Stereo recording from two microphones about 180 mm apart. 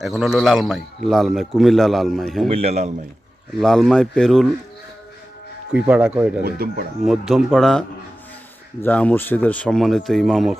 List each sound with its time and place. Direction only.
0.0 s a man's voice: centre (ahead or behind)
2.5 s speech: 35° right (ahead or behind)
3.6 s a man's voice: centre (ahead or behind)
5.7 s speech: 10° right (ahead or behind)
6.4 s speech: 60° right (ahead or behind)
7.0 s a man's voice: centre (ahead or behind)